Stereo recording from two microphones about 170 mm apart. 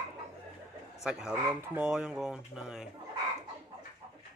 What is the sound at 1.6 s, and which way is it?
A man's voice, 5° right (ahead or behind).